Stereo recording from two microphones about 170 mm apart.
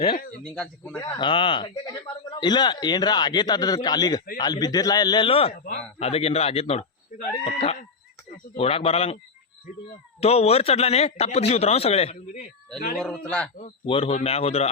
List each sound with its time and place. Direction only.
0.5 s speech: 5° left (ahead or behind)
1.1 s a man's voice: 30° left (ahead or behind)
10.2 s a man's voice: 35° left (ahead or behind)
13.0 s a man's voice: 5° left (ahead or behind)
13.8 s a man's voice: 35° left (ahead or behind)